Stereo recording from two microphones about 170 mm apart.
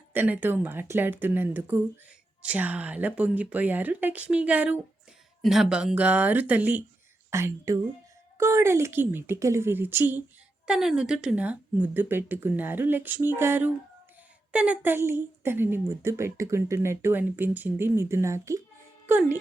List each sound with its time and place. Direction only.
0.1 s a woman's voice: 10° right (ahead or behind)